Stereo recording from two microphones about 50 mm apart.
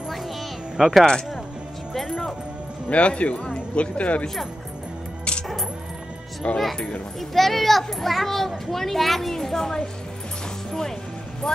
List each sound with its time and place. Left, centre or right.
0.7 s speech: centre
2.0 s music: centre
2.9 s speech: left
6.4 s speech: left
7.2 s a child's voice: centre
11.4 s speech: centre